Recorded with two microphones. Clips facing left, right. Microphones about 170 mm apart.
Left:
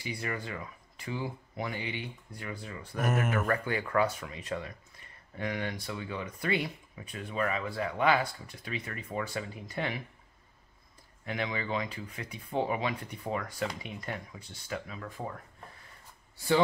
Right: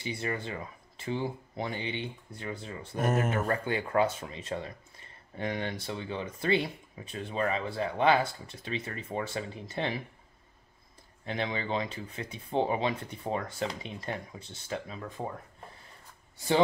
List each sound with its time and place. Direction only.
0.0 s speech: 25° right (ahead or behind)
11.2 s speech: 30° right (ahead or behind)